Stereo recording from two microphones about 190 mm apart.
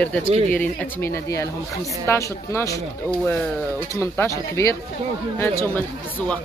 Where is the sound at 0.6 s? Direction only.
10° left (ahead or behind).